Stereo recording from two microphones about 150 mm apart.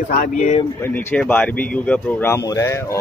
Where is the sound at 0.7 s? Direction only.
15° left (ahead or behind).